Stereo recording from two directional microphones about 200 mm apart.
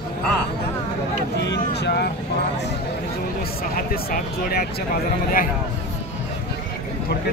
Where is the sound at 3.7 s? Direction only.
45° left (ahead or behind).